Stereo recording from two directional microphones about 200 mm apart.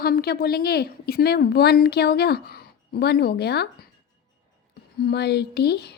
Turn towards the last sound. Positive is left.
turn(degrees=55)  # may be behind; listen again after turning